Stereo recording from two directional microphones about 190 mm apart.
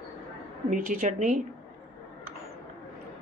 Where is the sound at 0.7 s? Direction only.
45° right (ahead or behind).